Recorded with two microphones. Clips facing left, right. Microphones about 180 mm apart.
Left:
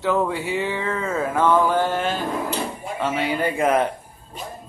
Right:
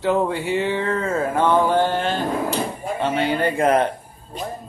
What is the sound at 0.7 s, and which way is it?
Mantra, 35° right (ahead or behind).